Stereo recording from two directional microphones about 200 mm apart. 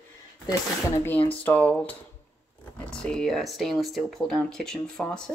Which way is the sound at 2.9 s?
5° left (ahead or behind).